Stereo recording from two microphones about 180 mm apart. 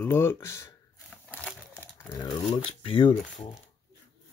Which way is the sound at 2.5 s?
30° left (ahead or behind).